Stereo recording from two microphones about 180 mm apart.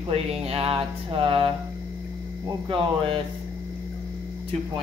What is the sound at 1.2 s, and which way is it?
Speech, 25° right (ahead or behind).